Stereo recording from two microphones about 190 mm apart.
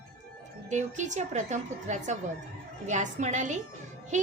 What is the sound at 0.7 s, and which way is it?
A woman's voice, 40° right (ahead or behind).